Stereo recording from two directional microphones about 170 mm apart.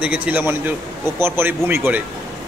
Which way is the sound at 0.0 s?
10° right (ahead or behind).